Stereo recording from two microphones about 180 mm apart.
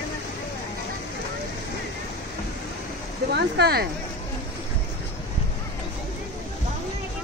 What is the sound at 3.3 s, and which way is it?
Speech, 65° right (ahead or behind).